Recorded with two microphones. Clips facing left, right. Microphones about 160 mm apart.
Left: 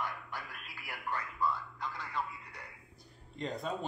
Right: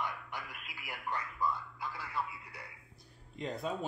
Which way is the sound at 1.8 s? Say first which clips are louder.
Even; 5° right (ahead or behind).